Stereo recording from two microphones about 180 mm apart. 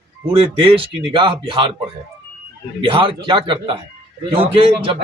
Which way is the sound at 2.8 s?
30° right (ahead or behind).